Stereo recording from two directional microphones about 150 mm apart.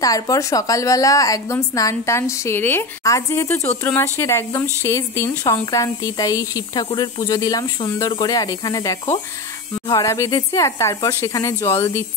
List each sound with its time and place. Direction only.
0.0 s a woman's voice: 25° left (ahead or behind)